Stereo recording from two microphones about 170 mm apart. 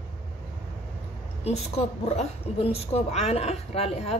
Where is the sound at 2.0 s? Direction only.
35° left (ahead or behind).